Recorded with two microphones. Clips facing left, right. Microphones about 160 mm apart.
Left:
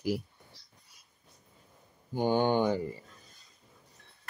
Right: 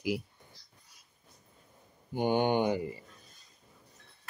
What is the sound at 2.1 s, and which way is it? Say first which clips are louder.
Speech: left 1 dB; 15° right (ahead or behind).